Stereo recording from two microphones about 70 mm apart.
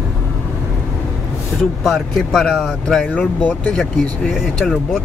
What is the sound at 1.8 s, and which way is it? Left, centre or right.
Speech, centre.